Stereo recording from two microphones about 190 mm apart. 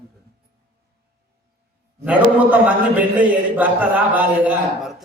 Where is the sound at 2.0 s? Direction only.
10° right (ahead or behind).